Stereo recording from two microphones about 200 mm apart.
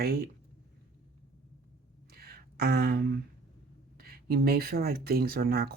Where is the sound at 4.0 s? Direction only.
50° right (ahead or behind).